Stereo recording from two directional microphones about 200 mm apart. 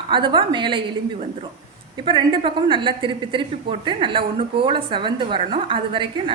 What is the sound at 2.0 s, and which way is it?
A woman's voice, 25° right (ahead or behind).